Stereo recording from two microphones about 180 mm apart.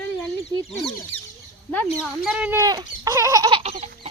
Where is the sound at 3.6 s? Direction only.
35° right (ahead or behind).